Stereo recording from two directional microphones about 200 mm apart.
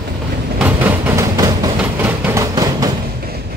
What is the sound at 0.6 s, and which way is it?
Train, 10° right (ahead or behind).